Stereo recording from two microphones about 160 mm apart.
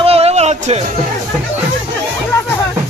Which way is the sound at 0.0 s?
40° right (ahead or behind).